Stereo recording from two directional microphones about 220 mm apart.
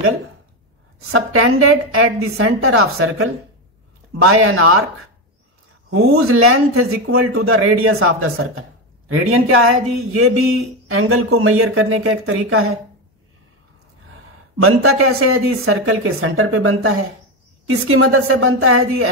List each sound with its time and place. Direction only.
1.1 s speech: 70° right (ahead or behind)
6.0 s speech: 75° right (ahead or behind)
14.6 s speech: 75° right (ahead or behind)